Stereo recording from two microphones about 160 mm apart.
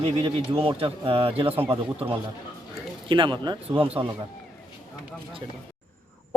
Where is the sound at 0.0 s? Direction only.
35° right (ahead or behind).